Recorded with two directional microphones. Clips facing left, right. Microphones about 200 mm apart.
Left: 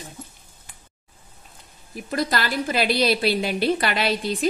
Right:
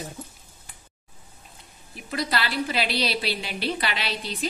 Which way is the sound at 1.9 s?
45° left (ahead or behind).